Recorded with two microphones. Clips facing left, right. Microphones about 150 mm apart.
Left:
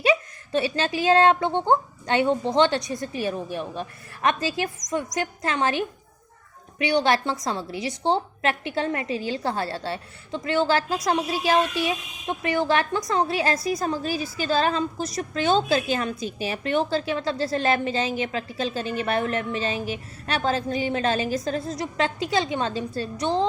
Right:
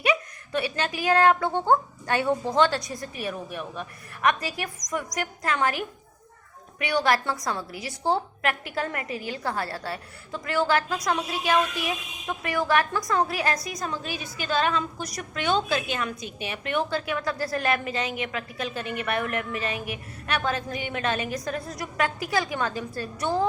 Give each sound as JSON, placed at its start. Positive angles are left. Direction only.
{"t": 0.0, "sound": "a woman's voice", "side_deg": 30}